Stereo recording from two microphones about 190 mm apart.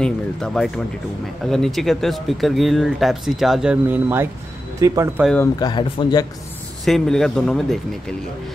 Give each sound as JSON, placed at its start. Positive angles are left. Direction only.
{"t": 0.0, "sound": "speech", "side_deg": 5}
{"t": 5.4, "sound": "speech", "side_deg": 20}
{"t": 6.8, "sound": "speech", "side_deg": 0}